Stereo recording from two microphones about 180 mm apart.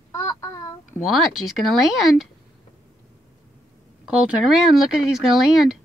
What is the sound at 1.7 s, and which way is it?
Speech, centre (ahead or behind).